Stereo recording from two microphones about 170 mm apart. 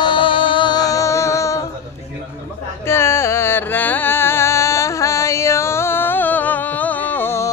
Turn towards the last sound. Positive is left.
turn(degrees=15)  # may be behind; listen again after turning